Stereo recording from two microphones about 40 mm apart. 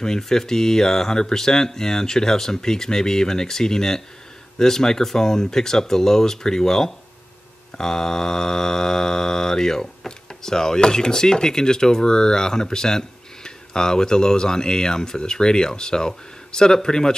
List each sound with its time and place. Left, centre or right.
0.2 s mantra: centre